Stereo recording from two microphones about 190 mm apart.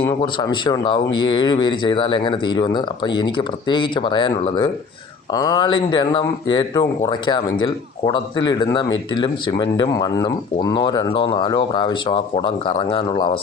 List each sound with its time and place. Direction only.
0.0 s speech: 25° left (ahead or behind)